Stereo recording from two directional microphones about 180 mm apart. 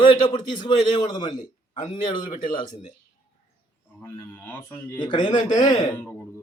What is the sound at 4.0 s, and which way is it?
Speech, 10° left (ahead or behind).